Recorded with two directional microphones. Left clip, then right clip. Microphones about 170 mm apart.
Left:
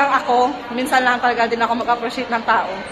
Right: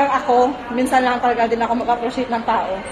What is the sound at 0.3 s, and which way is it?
A woman's voice, 15° right (ahead or behind).